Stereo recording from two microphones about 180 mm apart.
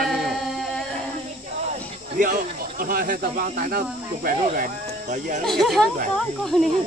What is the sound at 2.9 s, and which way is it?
Speech, 55° right (ahead or behind).